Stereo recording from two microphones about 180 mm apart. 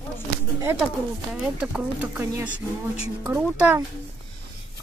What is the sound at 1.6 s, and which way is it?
Speech, 10° right (ahead or behind).